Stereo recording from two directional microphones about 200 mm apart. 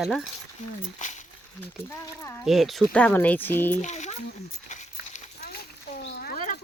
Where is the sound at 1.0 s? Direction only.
40° left (ahead or behind).